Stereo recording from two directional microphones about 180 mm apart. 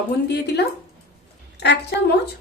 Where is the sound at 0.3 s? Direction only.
65° left (ahead or behind).